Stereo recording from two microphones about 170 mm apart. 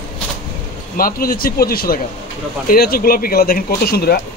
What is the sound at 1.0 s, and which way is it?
Speech, 60° left (ahead or behind).